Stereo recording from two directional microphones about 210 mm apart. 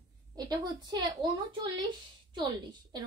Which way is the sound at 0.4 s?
20° right (ahead or behind).